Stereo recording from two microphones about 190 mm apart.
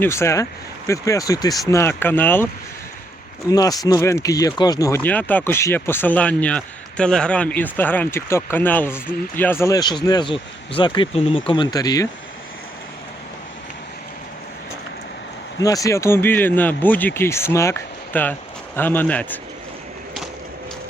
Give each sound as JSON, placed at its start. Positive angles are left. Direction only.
{"t": 0.0, "sound": "speech", "side_deg": 15}
{"t": 3.5, "sound": "speech", "side_deg": 20}
{"t": 15.6, "sound": "speech", "side_deg": 15}